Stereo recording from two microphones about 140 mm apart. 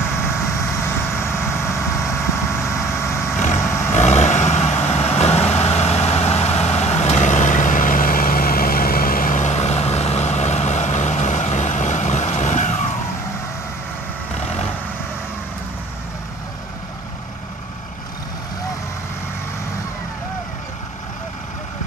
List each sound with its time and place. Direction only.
0.2 s vehicle: 20° left (ahead or behind)
3.4 s vehicle: 55° left (ahead or behind)